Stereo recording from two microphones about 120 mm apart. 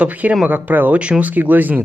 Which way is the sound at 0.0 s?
15° right (ahead or behind).